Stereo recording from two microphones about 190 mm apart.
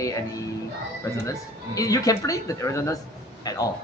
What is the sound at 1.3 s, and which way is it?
A man's voice, 20° left (ahead or behind).